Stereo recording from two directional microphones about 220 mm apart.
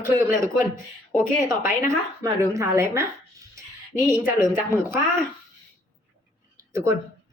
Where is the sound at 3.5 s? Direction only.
10° right (ahead or behind).